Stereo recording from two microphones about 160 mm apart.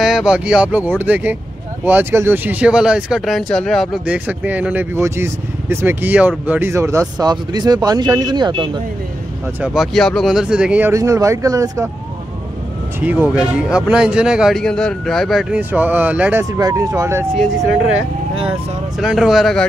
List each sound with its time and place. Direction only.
0.0 s speech: centre (ahead or behind); by 8.6 s 25° right (ahead or behind)
9.6 s speech: centre (ahead or behind); by 11.9 s 20° right (ahead or behind)
13.0 s a man's voice: 10° right (ahead or behind)
15.7 s speech: 10° right (ahead or behind)
18.5 s a man's voice: centre (ahead or behind)